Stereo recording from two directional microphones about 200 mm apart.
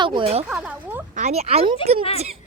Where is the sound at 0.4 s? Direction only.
5° right (ahead or behind).